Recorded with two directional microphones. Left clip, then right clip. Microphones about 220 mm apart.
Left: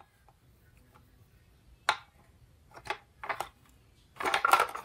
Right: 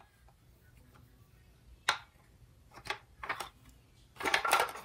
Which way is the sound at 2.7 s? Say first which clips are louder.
Left 2 dB; 25° left (ahead or behind).